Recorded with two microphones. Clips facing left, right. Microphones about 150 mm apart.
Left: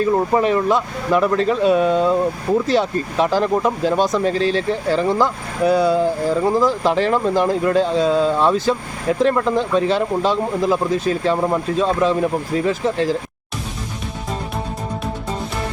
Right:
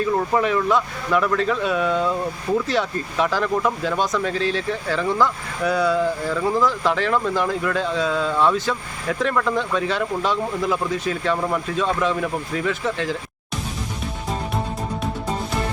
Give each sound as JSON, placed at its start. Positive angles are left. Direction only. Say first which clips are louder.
{"t": 0.3, "sound": "speech", "louder": "left 1 dB", "side_deg": 30}